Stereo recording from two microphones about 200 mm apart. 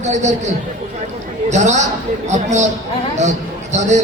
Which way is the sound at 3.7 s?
35° right (ahead or behind).